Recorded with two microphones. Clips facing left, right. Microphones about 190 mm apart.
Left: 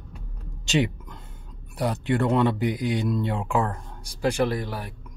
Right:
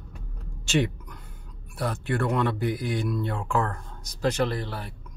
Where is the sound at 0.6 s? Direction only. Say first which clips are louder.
Left 1 dB; 20° left (ahead or behind).